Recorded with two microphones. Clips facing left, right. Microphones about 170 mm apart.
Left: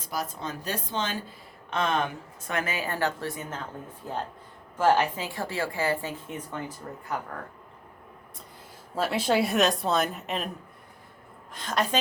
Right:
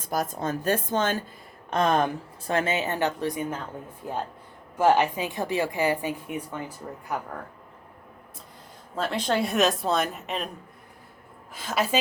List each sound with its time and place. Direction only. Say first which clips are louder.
0.0 s a woman's voice: right 5 dB; 50° right (ahead or behind); by 7.0 s 15° right (ahead or behind)
9.0 s a woman's voice: left 1 dB; 5° left (ahead or behind)
11.5 s a woman's voice: right 1 dB; 5° right (ahead or behind)